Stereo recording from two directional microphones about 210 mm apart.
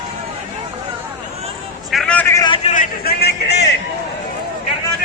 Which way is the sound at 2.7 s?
45° left (ahead or behind).